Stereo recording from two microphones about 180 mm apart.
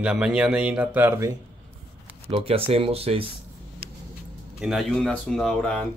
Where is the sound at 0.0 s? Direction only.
5° right (ahead or behind).